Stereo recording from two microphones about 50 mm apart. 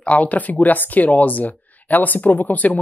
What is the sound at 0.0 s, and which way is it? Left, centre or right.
Speech, left.